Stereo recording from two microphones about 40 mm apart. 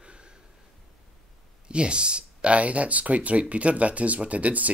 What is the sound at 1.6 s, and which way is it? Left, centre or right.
Speech, right.